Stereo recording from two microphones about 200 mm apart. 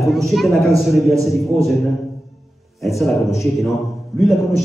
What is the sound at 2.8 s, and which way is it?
Speech, centre (ahead or behind).